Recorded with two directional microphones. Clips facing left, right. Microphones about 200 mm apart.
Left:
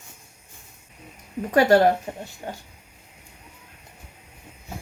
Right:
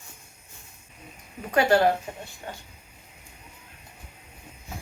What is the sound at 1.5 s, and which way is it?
Speech, 40° left (ahead or behind).